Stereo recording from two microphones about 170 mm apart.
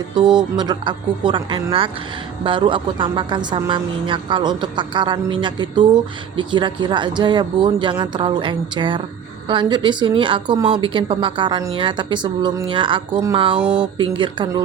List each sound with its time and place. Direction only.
0.2 s a woman's voice: 25° right (ahead or behind)